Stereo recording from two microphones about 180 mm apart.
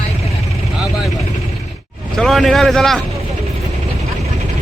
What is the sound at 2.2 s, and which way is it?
Speech, centre (ahead or behind).